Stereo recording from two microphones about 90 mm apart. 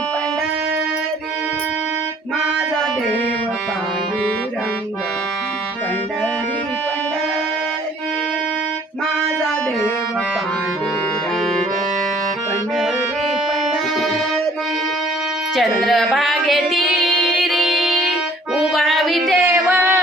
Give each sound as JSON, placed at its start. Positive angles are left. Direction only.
{"t": 15.5, "sound": "child singing", "side_deg": 0}
{"t": 18.5, "sound": "music", "side_deg": -5}
{"t": 19.5, "sound": "female singing", "side_deg": -15}
{"t": 19.7, "sound": "a sound", "side_deg": -25}